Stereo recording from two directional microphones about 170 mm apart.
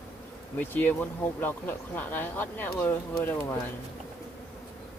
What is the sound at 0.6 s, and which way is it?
Speech, 10° left (ahead or behind).